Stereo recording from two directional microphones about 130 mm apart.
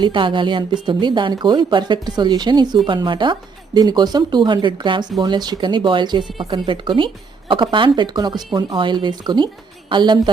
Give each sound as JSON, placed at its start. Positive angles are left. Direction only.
{"t": 0.0, "sound": "a woman's voice", "side_deg": -40}